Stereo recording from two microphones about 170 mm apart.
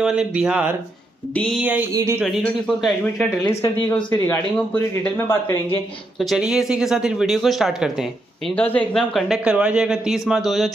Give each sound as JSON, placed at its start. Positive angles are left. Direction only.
{"t": 0.0, "sound": "speech", "side_deg": -5}
{"t": 1.3, "sound": "speech", "side_deg": 5}
{"t": 1.6, "sound": "speech", "side_deg": -10}
{"t": 2.2, "sound": "speech", "side_deg": 0}
{"t": 3.4, "sound": "speech", "side_deg": 15}
{"t": 6.1, "sound": "speech", "side_deg": 0}